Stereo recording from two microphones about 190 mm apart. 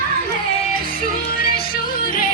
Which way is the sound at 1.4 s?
50° left (ahead or behind).